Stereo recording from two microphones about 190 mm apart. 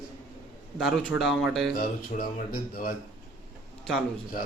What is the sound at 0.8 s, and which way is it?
Speech, centre (ahead or behind).